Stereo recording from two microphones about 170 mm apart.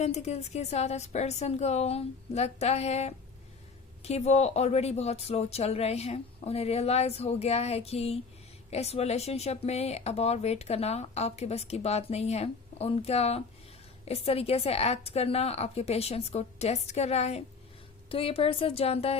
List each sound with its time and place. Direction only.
0.0 s speech: 40° left (ahead or behind)